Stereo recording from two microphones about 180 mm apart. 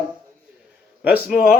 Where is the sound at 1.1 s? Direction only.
55° left (ahead or behind).